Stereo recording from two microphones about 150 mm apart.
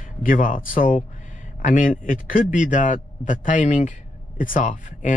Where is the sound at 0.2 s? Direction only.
65° left (ahead or behind).